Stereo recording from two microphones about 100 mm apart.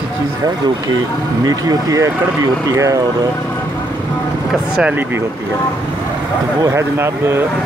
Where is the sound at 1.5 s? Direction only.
35° right (ahead or behind).